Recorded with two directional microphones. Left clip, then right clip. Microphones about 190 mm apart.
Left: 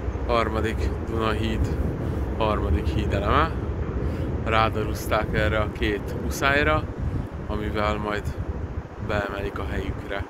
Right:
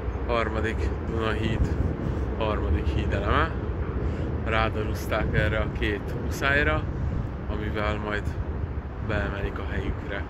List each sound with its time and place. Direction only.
0.3 s speech: 20° left (ahead or behind)